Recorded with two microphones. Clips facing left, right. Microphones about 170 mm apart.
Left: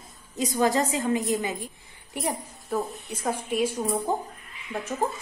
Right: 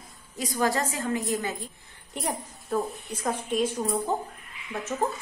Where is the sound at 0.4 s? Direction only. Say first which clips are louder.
Left 3 dB; 20° left (ahead or behind).